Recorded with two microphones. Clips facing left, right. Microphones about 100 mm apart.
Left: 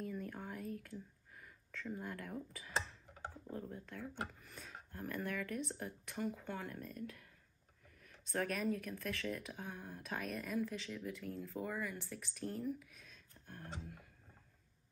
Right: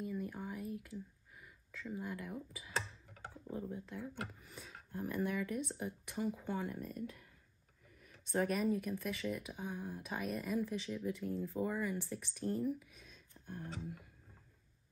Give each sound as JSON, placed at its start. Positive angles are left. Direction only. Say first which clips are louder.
{"t": 0.0, "sound": "a sound", "louder": "right 3 dB", "side_deg": -5}
{"t": 3.4, "sound": "speech", "louder": "right 6 dB", "side_deg": -10}
{"t": 8.4, "sound": "speech", "louder": "right 4 dB", "side_deg": -10}
{"t": 11.1, "sound": "speech", "louder": "right 6 dB", "side_deg": -25}
{"t": 11.5, "sound": "speech", "louder": "right 4 dB", "side_deg": -5}